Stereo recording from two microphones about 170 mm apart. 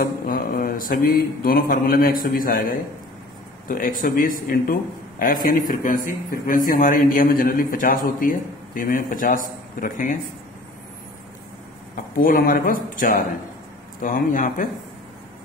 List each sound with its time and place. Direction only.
0.0 s mantra: 60° left (ahead or behind)
3.6 s a man's voice: 55° left (ahead or behind)
12.2 s a man's voice: 60° left (ahead or behind)